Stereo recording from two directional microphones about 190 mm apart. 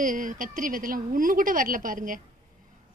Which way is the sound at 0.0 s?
45° right (ahead or behind).